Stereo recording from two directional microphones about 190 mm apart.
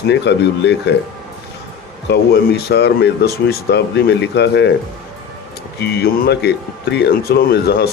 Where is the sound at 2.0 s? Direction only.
60° left (ahead or behind).